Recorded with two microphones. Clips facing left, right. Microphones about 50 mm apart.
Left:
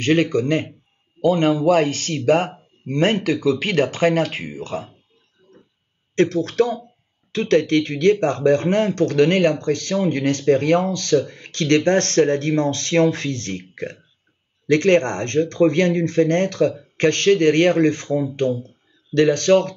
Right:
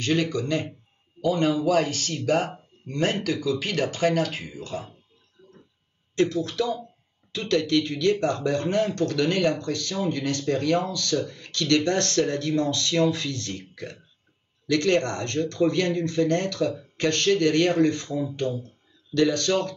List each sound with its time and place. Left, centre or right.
0.0 s speech: left
5.4 s a sound: centre
6.1 s speech: left